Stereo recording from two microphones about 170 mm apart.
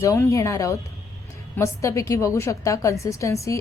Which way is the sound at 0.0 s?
15° left (ahead or behind).